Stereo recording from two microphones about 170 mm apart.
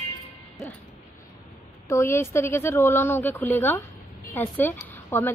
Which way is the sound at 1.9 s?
15° left (ahead or behind).